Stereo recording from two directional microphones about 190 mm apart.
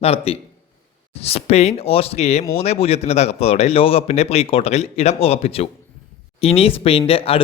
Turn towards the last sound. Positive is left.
turn(degrees=30)  # may be behind; listen again after turning